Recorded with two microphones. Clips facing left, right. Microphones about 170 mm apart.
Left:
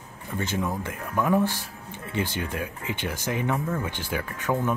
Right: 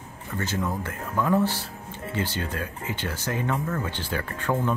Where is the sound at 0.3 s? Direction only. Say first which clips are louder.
Even; 10° left (ahead or behind).